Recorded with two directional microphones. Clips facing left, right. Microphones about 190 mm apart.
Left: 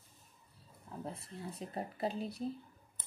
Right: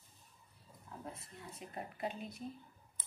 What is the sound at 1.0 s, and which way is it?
Speech, 30° left (ahead or behind).